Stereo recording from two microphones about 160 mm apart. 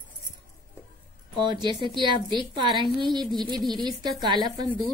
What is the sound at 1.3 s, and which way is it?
A woman's voice, 30° right (ahead or behind).